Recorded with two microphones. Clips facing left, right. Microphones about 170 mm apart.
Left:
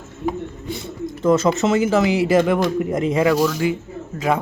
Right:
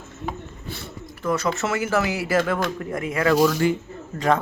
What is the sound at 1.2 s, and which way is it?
Speech, 20° left (ahead or behind).